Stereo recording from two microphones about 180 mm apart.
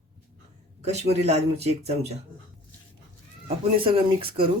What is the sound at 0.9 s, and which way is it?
Speech, 35° right (ahead or behind).